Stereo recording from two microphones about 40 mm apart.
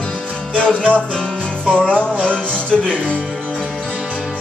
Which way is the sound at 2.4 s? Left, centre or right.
Left.